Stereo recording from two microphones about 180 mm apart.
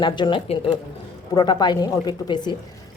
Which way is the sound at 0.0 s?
25° left (ahead or behind).